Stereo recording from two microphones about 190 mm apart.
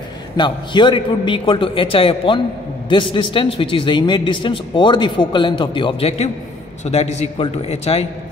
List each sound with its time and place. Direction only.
0.4 s a man's voice: 25° left (ahead or behind)